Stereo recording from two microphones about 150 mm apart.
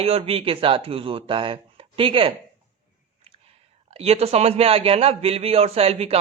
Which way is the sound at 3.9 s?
45° right (ahead or behind).